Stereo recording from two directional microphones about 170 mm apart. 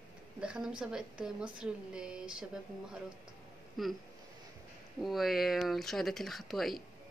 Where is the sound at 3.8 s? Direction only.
Centre (ahead or behind).